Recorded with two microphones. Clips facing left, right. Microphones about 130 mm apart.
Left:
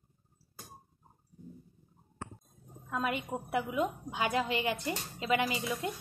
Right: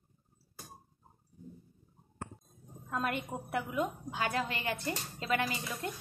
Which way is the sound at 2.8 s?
5° left (ahead or behind).